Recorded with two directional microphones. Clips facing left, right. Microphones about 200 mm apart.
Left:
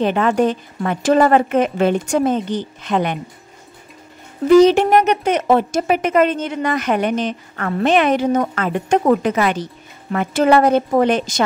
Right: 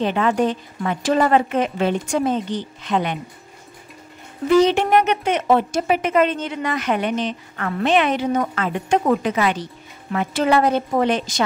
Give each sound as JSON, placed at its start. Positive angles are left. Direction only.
{"t": 0.0, "sound": "speech", "side_deg": 50}
{"t": 4.6, "sound": "speech", "side_deg": 40}